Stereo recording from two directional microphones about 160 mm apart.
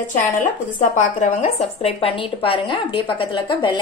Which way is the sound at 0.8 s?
45° left (ahead or behind).